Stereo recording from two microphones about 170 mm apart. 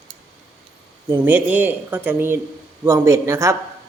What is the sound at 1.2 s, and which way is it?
A man's voice, 10° right (ahead or behind).